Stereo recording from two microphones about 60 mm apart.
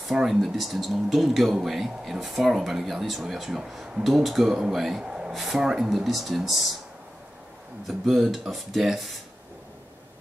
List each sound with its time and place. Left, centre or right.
0.1 s speech: centre
7.8 s speech: centre